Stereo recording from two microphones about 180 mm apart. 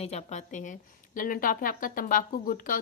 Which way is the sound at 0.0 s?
35° left (ahead or behind).